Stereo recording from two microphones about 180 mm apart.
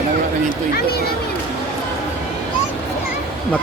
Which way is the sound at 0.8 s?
60° left (ahead or behind).